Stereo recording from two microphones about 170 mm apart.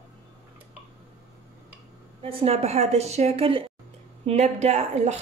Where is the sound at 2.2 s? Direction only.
35° right (ahead or behind).